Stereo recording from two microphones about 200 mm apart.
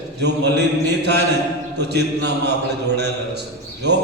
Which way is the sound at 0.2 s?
60° right (ahead or behind).